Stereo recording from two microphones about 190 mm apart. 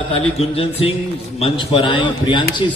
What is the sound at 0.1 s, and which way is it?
A man's voice, 30° left (ahead or behind).